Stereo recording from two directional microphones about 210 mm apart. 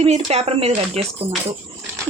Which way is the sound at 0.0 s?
30° right (ahead or behind).